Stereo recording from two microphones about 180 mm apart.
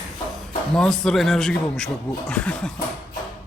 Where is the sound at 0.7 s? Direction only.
5° left (ahead or behind).